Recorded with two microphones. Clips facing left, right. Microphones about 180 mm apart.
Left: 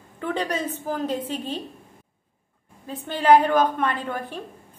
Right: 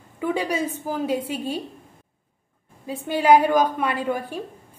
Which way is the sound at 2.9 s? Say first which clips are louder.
Right 1 dB; 10° right (ahead or behind).